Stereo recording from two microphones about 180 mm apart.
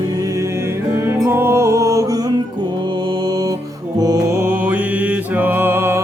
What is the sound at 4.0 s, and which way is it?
Music, 20° right (ahead or behind).